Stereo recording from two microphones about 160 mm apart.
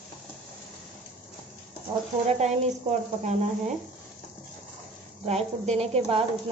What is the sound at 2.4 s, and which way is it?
Speech, 40° right (ahead or behind).